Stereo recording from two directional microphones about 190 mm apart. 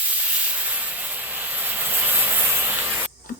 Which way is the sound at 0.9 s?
10° right (ahead or behind).